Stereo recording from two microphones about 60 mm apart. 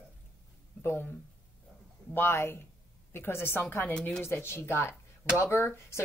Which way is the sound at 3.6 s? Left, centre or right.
Left.